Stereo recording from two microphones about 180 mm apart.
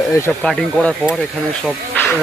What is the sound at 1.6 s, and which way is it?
Snake, 10° left (ahead or behind).